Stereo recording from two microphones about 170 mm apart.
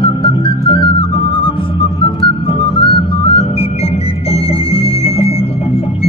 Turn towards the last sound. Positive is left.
turn(degrees=35)  # may be behind; listen again after turning